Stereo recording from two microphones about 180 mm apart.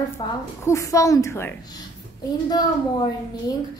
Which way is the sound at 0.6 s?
15° left (ahead or behind).